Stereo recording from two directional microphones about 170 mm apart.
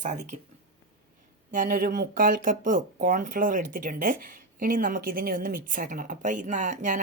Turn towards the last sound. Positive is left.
turn(degrees=-45)  # may be behind; listen again after turning